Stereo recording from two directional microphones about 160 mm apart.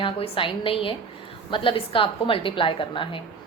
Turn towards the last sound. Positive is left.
turn(degrees=30)  # may be behind; listen again after turning